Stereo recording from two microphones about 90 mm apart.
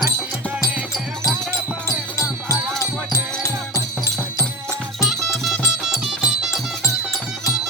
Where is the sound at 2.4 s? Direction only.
35° left (ahead or behind).